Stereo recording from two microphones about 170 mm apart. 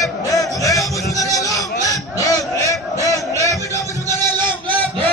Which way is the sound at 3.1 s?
20° left (ahead or behind).